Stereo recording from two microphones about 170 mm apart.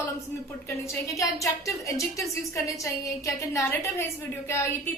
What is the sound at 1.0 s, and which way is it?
A woman's voice, 20° left (ahead or behind).